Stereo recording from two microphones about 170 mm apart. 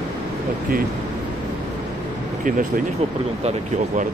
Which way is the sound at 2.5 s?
50° right (ahead or behind).